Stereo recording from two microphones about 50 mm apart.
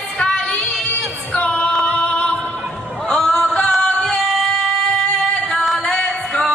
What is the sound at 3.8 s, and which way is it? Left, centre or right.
Singing, centre.